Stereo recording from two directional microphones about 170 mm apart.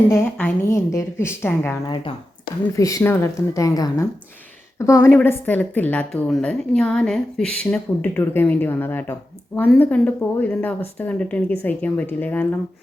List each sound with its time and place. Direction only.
0.1 s a woman's voice: 10° left (ahead or behind)